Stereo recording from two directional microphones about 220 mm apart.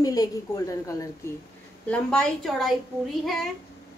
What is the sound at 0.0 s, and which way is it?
A woman's voice, 15° left (ahead or behind).